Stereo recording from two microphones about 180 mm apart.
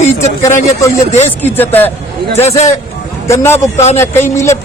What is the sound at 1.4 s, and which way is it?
Speech, 10° left (ahead or behind).